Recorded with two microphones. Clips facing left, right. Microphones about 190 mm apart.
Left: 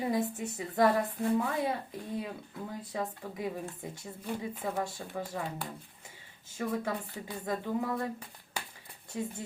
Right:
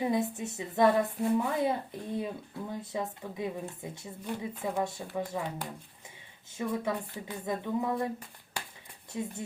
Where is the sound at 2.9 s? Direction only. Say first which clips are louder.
Left 1 dB; 20° right (ahead or behind).